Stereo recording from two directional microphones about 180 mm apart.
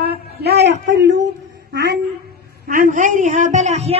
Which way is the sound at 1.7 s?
70° right (ahead or behind).